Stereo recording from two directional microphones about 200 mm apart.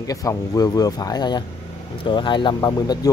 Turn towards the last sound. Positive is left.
turn(degrees=20)  # may be behind; listen again after turning